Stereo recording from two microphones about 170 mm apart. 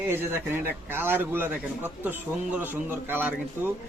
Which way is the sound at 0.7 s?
10° right (ahead or behind).